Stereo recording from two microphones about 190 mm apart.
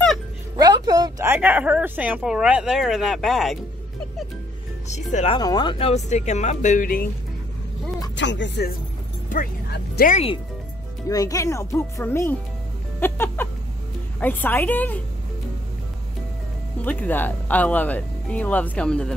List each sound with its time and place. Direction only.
0.6 s speech: 20° right (ahead or behind); by 3.5 s centre (ahead or behind)
4.8 s speech: 35° left (ahead or behind)
5.4 s speech: 20° left (ahead or behind); by 7.1 s 50° left (ahead or behind)
8.2 s speech: 70° left (ahead or behind)
9.3 s speech: 50° left (ahead or behind)
10.1 s speech: 30° left (ahead or behind)
11.1 s speech: 20° left (ahead or behind)
13.0 s a sound: 10° left (ahead or behind)
14.2 s speech: 10° left (ahead or behind)
16.8 s speech: 10° left (ahead or behind)